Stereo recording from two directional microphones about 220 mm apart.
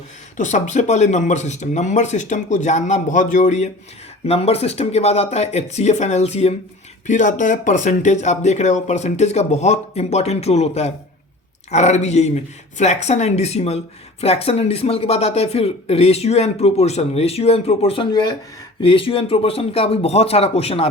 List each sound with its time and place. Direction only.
0.3 s speech: 35° left (ahead or behind)